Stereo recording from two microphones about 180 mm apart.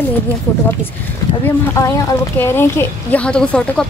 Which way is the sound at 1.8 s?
20° left (ahead or behind).